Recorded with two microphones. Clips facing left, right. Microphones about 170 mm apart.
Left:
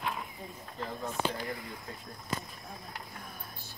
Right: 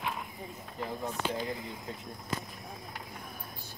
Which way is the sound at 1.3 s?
20° right (ahead or behind).